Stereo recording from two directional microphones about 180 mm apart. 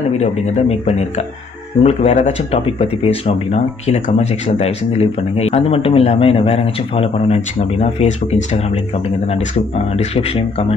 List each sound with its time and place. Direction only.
0.2 s speech: 40° left (ahead or behind)
9.9 s speech: 35° left (ahead or behind)